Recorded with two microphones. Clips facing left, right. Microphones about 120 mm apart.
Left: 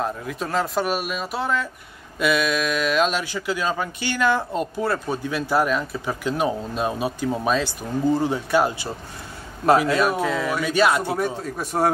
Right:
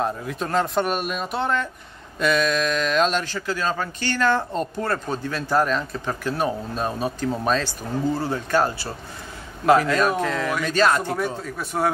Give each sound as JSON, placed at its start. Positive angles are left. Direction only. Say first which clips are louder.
{"t": 0.0, "sound": "speech", "louder": "right 1 dB", "side_deg": 0}
{"t": 11.5, "sound": "speech", "louder": "left 2 dB", "side_deg": 40}